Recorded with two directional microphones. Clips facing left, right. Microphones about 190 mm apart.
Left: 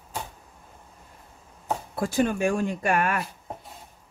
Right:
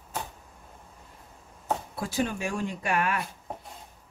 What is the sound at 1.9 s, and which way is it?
Speech, 50° left (ahead or behind).